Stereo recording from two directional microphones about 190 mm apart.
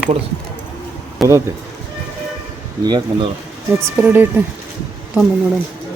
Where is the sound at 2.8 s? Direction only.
20° right (ahead or behind).